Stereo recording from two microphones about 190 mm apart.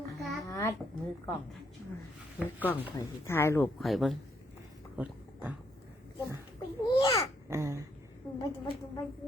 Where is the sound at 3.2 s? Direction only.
15° left (ahead or behind).